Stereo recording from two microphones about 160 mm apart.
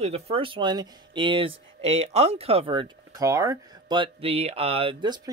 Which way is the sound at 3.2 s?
20° right (ahead or behind).